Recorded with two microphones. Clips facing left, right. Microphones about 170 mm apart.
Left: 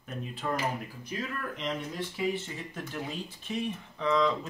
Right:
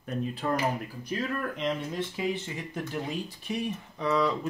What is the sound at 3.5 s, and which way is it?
Speech, 10° right (ahead or behind).